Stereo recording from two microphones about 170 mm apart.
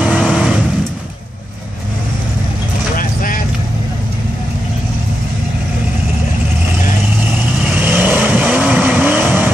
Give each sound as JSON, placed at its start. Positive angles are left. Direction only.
{"t": 0.0, "sound": "vehicle", "side_deg": -5}
{"t": 3.0, "sound": "vehicle", "side_deg": 55}
{"t": 7.7, "sound": "vehicle", "side_deg": -10}